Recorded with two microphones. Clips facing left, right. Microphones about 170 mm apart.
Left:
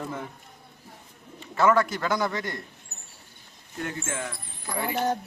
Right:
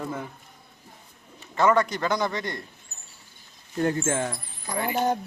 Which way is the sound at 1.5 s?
5° left (ahead or behind).